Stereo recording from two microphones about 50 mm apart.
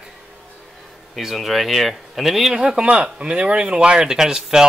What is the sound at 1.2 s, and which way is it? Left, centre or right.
Speech, centre.